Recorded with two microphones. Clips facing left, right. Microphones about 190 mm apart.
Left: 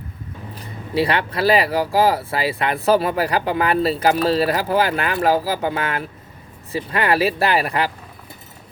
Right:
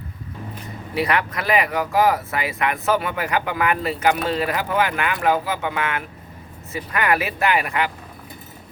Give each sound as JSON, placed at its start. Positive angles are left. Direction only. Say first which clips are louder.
{"t": 0.9, "sound": "speech", "louder": "left 3 dB", "side_deg": 30}